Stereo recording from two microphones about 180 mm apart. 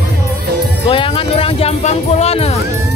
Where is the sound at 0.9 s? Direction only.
30° left (ahead or behind).